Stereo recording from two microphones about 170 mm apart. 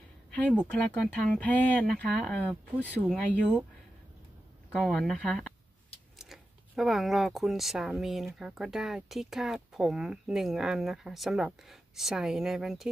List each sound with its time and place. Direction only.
0.3 s speech: 5° left (ahead or behind)
3.1 s speech: 10° right (ahead or behind)
4.7 s speech: centre (ahead or behind)